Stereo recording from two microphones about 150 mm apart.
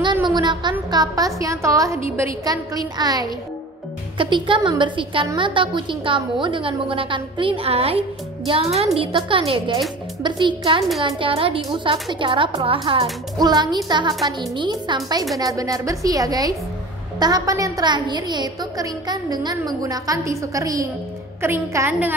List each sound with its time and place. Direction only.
0.0 s a woman's voice: 30° right (ahead or behind); by 22.1 s 15° right (ahead or behind)